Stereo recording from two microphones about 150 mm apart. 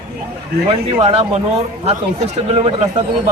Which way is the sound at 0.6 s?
40° right (ahead or behind).